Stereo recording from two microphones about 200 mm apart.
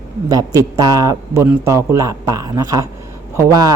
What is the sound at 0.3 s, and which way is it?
A man's voice, 20° right (ahead or behind).